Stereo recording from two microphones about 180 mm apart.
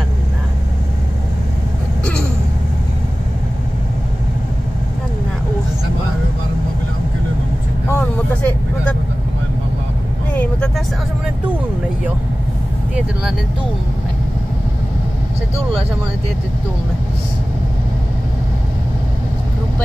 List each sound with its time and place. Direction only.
7.9 s vehicle: 10° left (ahead or behind)
10.3 s vehicle: 10° left (ahead or behind)